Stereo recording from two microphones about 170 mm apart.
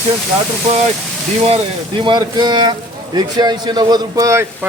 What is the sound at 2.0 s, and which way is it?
A man's voice, 25° right (ahead or behind).